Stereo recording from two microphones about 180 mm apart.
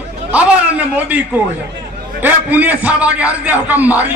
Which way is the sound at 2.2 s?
10° right (ahead or behind).